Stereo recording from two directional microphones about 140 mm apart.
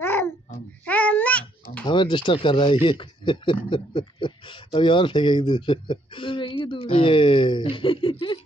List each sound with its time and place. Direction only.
0.0 s babbling: 15° left (ahead or behind)
1.9 s speech: 35° left (ahead or behind)